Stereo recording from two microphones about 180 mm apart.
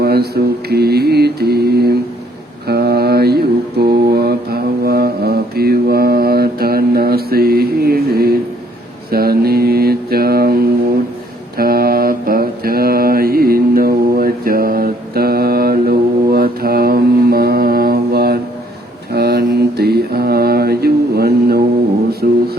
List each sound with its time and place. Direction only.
0.0 s mantra: 60° right (ahead or behind)
22.2 s music: 50° right (ahead or behind)